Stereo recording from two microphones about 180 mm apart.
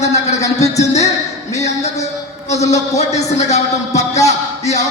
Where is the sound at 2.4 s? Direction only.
40° left (ahead or behind).